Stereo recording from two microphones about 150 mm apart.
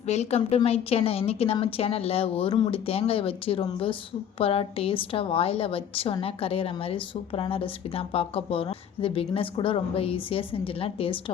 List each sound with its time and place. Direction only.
0.1 s a woman's voice: 45° left (ahead or behind)